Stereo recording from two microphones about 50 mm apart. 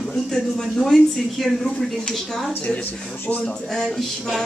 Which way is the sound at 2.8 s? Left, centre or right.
Left.